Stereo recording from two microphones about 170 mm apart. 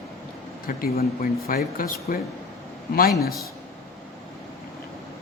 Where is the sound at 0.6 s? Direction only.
60° left (ahead or behind).